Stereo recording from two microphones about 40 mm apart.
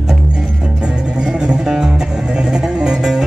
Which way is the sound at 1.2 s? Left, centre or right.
Right.